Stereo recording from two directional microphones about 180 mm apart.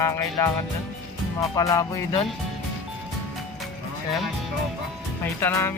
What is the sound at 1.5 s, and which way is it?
Music, 20° left (ahead or behind).